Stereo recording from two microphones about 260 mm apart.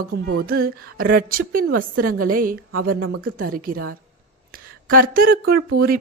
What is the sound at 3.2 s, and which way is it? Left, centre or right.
A woman's voice, right.